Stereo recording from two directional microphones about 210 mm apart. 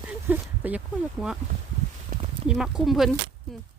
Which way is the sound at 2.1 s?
35° right (ahead or behind).